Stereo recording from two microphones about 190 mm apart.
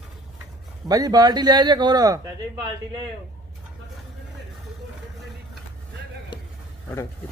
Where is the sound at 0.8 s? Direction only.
20° right (ahead or behind).